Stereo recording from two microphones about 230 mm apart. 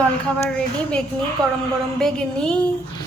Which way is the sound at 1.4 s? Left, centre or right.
Centre.